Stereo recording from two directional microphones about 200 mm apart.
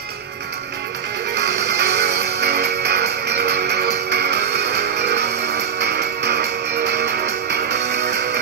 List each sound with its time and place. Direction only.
1.3 s music: 60° right (ahead or behind)